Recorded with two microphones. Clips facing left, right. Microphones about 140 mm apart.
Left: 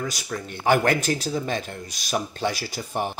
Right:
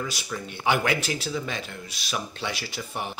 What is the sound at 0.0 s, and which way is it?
Speech, 45° left (ahead or behind).